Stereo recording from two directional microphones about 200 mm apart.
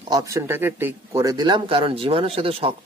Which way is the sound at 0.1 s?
15° right (ahead or behind).